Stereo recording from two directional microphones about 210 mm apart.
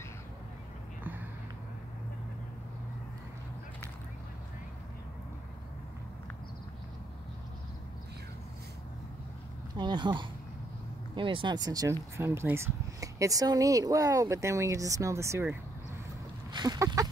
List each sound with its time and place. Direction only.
9.8 s a sound: 20° right (ahead or behind)
11.1 s speech: 25° right (ahead or behind)
16.5 s speech: 20° right (ahead or behind)